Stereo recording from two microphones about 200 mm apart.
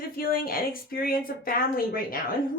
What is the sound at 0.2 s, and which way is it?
A woman's voice, 45° left (ahead or behind).